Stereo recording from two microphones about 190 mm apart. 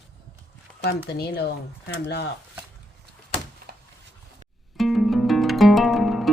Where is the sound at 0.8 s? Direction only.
60° left (ahead or behind).